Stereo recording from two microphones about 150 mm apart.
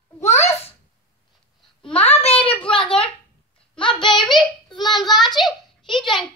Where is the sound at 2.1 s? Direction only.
40° left (ahead or behind).